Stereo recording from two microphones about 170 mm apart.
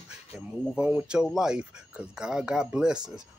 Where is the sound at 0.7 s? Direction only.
5° right (ahead or behind).